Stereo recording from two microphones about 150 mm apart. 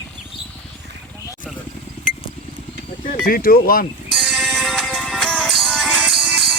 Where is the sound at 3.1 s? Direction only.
70° left (ahead or behind).